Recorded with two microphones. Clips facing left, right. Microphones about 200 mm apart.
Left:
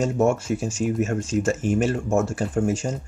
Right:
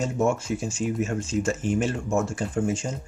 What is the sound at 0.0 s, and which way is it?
Speech, 45° left (ahead or behind).